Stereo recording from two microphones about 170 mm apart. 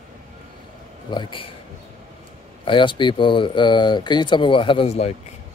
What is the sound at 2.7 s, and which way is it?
Speech, 30° left (ahead or behind).